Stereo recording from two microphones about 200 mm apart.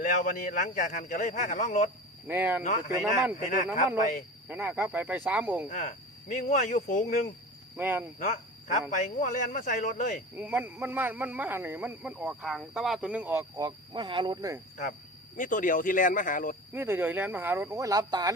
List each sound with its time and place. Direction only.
0.0 s a man's voice: 40° left (ahead or behind)
2.2 s speech: 10° right (ahead or behind)
3.3 s a man's voice: 40° left (ahead or behind)
4.4 s speech: 10° right (ahead or behind)
5.6 s a man's voice: 40° left (ahead or behind)
7.8 s speech: 10° right (ahead or behind)
8.2 s a man's voice: 40° left (ahead or behind)
10.3 s speech: 10° right (ahead or behind)
15.4 s a man's voice: 40° left (ahead or behind)
16.7 s speech: 10° right (ahead or behind)